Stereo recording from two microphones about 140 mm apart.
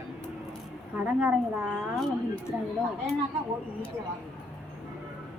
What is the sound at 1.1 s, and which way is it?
Speech, 10° right (ahead or behind).